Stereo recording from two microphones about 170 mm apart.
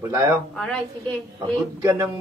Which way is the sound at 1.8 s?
20° right (ahead or behind).